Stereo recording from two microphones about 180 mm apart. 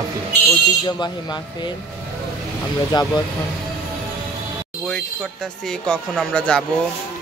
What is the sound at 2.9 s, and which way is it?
Speech, 20° left (ahead or behind).